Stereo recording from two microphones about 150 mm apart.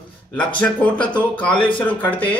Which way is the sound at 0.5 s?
10° left (ahead or behind).